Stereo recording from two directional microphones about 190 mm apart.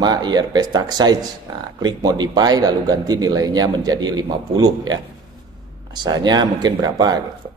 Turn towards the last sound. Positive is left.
turn(degrees=-20)  # may be behind; listen again after turning